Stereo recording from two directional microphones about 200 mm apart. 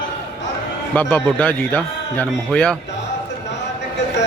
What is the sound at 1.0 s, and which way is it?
A man's voice, 5° left (ahead or behind).